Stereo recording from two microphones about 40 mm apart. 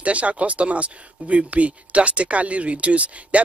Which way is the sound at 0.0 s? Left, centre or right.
Right.